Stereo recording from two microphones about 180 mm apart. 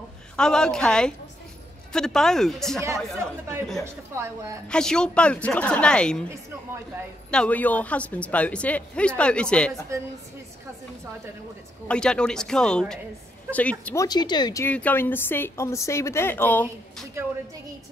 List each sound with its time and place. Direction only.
0.4 s a woman's voice: 5° left (ahead or behind)
2.8 s speech: 15° right (ahead or behind)
4.6 s a woman's voice: 5° left (ahead or behind)
7.2 s speech: 5° left (ahead or behind)
11.9 s a woman's voice: 5° left (ahead or behind)
13.9 s speech: 20° left (ahead or behind)
14.6 s speech: 10° left (ahead or behind)
16.6 s speech: 15° right (ahead or behind)